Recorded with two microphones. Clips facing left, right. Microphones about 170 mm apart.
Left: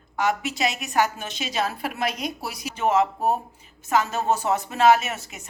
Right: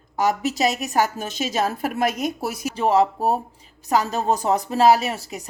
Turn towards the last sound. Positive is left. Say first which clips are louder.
# right 5 dB
turn(degrees=-35)  # may be behind; listen again after turning